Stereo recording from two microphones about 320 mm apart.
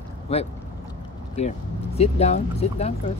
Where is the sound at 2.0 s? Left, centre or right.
Centre.